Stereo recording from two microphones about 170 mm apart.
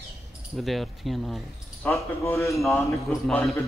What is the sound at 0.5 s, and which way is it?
Speech, centre (ahead or behind).